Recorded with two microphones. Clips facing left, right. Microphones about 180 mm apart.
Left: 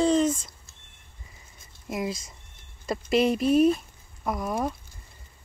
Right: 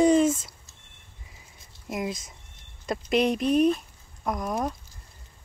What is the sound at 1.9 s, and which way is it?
A child's voice, centre (ahead or behind).